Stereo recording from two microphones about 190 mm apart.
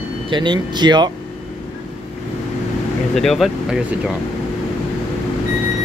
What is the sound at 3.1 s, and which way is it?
Speech, centre (ahead or behind).